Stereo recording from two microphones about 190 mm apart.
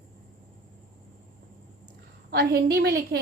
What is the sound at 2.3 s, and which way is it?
Speech, 60° right (ahead or behind).